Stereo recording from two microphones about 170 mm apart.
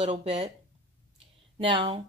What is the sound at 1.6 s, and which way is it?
Speech, 30° right (ahead or behind).